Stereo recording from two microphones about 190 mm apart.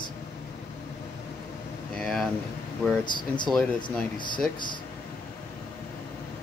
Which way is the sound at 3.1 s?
25° left (ahead or behind).